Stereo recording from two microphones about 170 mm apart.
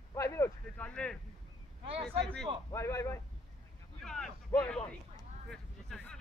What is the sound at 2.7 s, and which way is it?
Speech, 15° left (ahead or behind).